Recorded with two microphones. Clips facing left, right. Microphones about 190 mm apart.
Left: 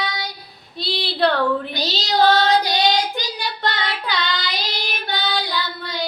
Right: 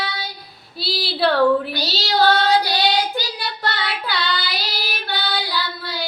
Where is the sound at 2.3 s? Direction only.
20° left (ahead or behind).